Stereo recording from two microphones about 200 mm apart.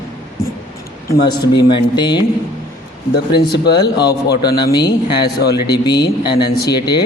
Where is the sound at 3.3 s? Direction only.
50° left (ahead or behind).